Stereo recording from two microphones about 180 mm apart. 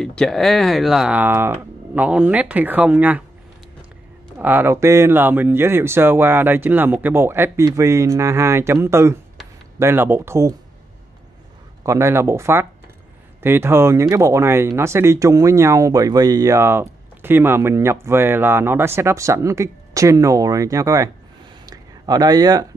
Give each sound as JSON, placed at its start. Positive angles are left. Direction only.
{"t": 0.0, "sound": "speech", "side_deg": 5}
{"t": 4.4, "sound": "speech", "side_deg": -10}
{"t": 11.8, "sound": "speech", "side_deg": -15}
{"t": 21.6, "sound": "a sound", "side_deg": -20}